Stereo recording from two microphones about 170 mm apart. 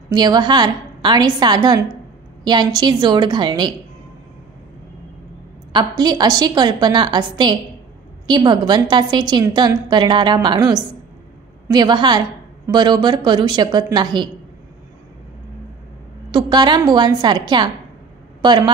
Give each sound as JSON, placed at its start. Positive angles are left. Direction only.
{"t": 0.1, "sound": "a woman's voice", "side_deg": -25}
{"t": 5.7, "sound": "a woman's voice", "side_deg": -25}
{"t": 16.3, "sound": "a woman's voice", "side_deg": -25}